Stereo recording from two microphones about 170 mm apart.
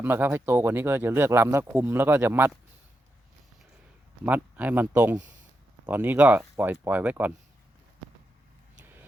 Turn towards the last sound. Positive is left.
turn(degrees=-10)  # may be behind; listen again after turning